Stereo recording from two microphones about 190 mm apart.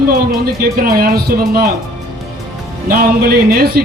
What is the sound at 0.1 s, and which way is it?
Speech, 50° right (ahead or behind).